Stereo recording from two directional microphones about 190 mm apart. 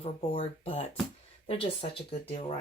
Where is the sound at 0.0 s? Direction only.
30° left (ahead or behind).